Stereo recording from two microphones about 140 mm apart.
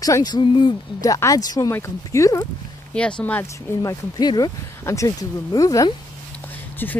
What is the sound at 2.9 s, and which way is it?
Speech, 5° left (ahead or behind).